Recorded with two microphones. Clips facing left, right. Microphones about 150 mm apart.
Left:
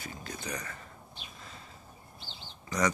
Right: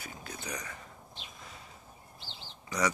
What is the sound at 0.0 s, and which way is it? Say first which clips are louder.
Speech: left 2 dB; 10° right (ahead or behind).